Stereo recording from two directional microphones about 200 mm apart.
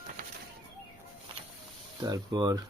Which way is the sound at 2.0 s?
20° right (ahead or behind).